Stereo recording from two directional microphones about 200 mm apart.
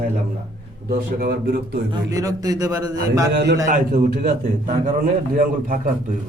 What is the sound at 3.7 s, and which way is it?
A man's voice, 45° right (ahead or behind).